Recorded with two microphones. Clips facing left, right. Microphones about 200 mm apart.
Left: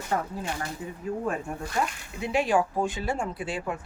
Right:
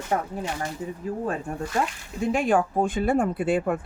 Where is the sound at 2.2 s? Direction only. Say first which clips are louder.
Right 2 dB; 50° right (ahead or behind).